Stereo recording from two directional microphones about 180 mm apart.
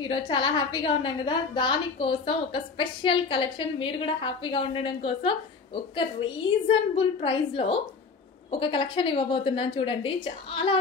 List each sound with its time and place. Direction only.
0.0 s a woman's voice: 25° left (ahead or behind)
6.7 s a woman's voice: 30° left (ahead or behind)